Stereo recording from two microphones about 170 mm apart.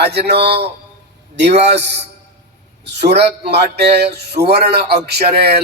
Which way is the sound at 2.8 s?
80° right.